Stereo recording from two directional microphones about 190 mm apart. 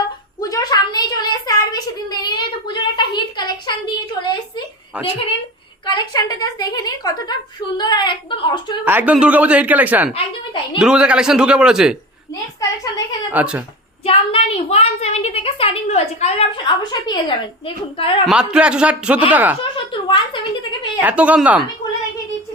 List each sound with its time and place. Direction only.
0.4 s a sound: 20° left (ahead or behind)
4.9 s speech: 5° right (ahead or behind)
5.8 s a woman's voice: 25° left (ahead or behind)
8.8 s a man's voice: 10° right (ahead or behind)
13.3 s a man's voice: 5° right (ahead or behind)
14.0 s a woman's voice: 30° left (ahead or behind)
16.9 s a woman's voice: 20° left (ahead or behind)
18.3 s a man's voice: 5° right (ahead or behind)
19.7 s a sound: 25° left (ahead or behind)
21.0 s speech: 10° right (ahead or behind)